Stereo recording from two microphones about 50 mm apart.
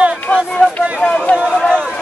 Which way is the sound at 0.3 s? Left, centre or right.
Left.